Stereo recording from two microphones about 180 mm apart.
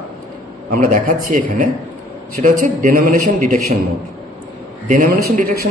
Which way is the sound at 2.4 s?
50° right (ahead or behind).